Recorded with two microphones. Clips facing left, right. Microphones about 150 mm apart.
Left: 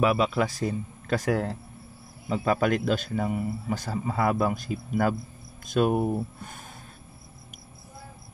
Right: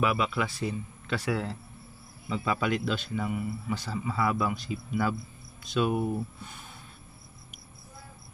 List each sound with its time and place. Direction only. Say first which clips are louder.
0.0 s speech: left 5 dB; 40° left (ahead or behind)